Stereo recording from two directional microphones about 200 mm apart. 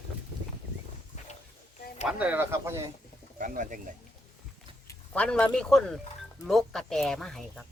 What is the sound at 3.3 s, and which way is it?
Speech, 40° right (ahead or behind).